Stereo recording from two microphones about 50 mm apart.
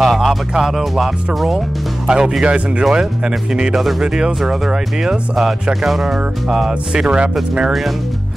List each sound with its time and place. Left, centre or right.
0.0 s speech: centre
2.0 s speech: centre
6.9 s speech: centre